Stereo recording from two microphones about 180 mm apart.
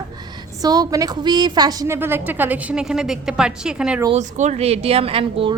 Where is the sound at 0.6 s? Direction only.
20° right (ahead or behind); by 4.0 s 5° right (ahead or behind).